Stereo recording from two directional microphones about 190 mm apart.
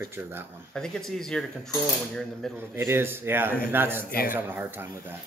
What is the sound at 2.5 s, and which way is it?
Speech, 10° right (ahead or behind).